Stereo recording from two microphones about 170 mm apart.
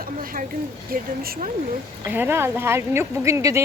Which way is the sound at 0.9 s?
60° right (ahead or behind).